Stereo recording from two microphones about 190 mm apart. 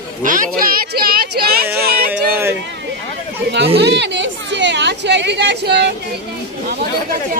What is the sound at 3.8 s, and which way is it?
A woman's voice, 65° right (ahead or behind).